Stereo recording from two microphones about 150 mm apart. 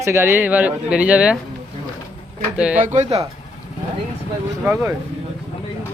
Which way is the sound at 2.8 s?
50° right (ahead or behind).